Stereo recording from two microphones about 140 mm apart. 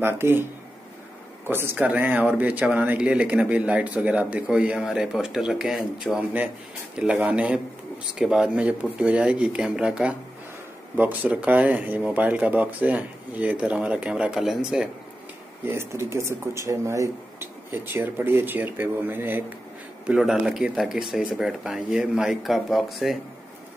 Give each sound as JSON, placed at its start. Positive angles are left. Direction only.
{"t": 0.0, "sound": "speech", "side_deg": -15}
{"t": 1.5, "sound": "speech", "side_deg": -15}
{"t": 15.6, "sound": "speech", "side_deg": -15}